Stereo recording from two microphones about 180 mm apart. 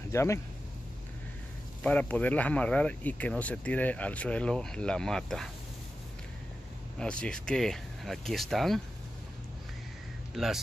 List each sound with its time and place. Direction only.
0.1 s speech: 15° left (ahead or behind)
1.8 s speech: 5° left (ahead or behind)
7.0 s speech: 5° left (ahead or behind)
10.3 s a man's voice: centre (ahead or behind)